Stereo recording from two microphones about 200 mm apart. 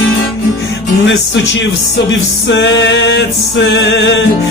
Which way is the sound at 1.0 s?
65° left (ahead or behind).